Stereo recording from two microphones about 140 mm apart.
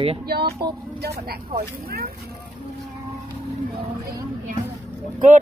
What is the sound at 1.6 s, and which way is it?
Speech, 90° right.